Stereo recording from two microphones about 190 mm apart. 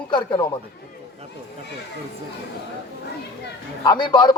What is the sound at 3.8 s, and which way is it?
Speech, 25° left (ahead or behind).